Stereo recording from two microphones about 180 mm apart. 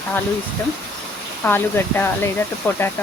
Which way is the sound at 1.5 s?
10° left (ahead or behind).